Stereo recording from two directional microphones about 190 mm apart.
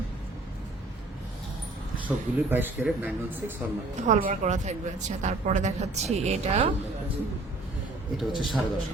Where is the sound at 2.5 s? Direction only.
10° right (ahead or behind).